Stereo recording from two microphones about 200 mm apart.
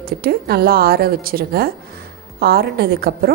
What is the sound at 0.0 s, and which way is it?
A woman's voice, 50° right (ahead or behind).